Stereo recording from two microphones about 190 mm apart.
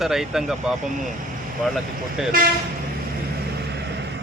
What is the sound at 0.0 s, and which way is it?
Speech, centre (ahead or behind).